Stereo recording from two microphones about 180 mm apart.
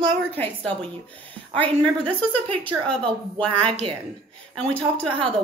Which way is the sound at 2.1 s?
10° left (ahead or behind).